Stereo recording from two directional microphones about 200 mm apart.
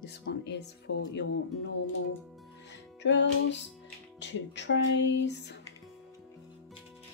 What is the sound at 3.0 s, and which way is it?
Speech, 60° left (ahead or behind).